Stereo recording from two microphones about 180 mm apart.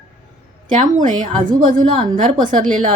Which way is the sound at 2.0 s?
30° right (ahead or behind).